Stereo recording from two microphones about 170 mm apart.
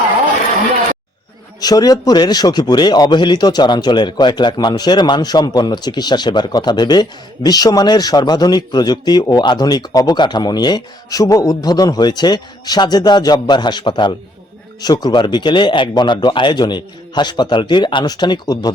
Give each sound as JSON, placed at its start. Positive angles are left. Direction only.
{"t": 1.6, "sound": "a man's voice", "side_deg": 20}